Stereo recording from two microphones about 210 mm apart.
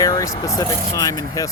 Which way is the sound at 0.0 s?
15° left (ahead or behind).